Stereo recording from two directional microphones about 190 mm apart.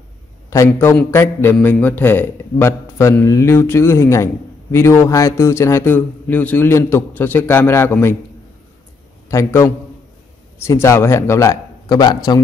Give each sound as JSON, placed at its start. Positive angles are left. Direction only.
{"t": 0.5, "sound": "a man's voice", "side_deg": 15}
{"t": 9.3, "sound": "a man's voice", "side_deg": 15}